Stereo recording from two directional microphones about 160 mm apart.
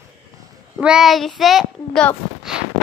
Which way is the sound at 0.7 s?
5° right (ahead or behind).